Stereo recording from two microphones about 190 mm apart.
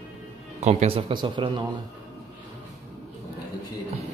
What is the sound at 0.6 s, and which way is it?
Speech, 35° right (ahead or behind).